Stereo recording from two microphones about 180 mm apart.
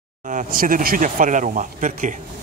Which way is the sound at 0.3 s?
50° right (ahead or behind).